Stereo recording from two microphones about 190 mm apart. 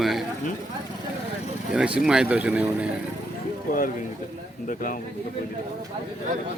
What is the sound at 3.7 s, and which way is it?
Speech, 45° left (ahead or behind).